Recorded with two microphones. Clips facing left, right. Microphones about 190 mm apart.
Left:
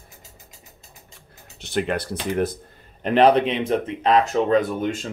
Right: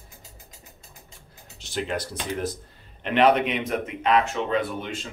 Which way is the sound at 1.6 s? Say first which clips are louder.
Left 5 dB; 60° left (ahead or behind).